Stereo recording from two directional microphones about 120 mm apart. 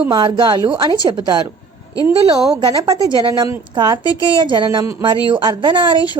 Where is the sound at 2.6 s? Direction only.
40° right (ahead or behind).